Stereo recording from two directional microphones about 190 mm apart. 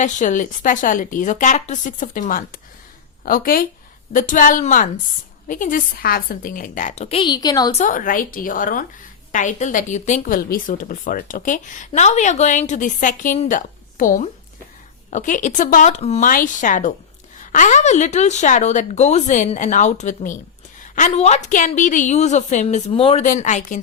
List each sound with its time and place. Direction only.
0.0 s a woman's voice: 40° left (ahead or behind); by 7.7 s 20° left (ahead or behind)
7.7 s a woman's voice: 40° left (ahead or behind)
23.2 s speech: 40° left (ahead or behind)